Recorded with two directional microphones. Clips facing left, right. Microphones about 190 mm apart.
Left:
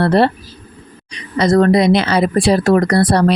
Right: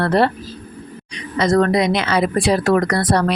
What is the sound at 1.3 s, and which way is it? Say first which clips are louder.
Speech: left 4 dB; 35° left (ahead or behind).